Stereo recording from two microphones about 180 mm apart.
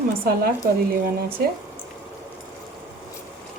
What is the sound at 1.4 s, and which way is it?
Speech, 60° right (ahead or behind).